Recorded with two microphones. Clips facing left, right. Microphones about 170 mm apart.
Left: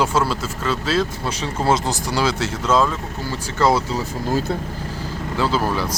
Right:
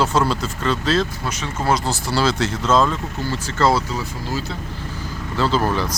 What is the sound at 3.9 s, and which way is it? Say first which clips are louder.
Speech: left 4 dB; 50° left (ahead or behind).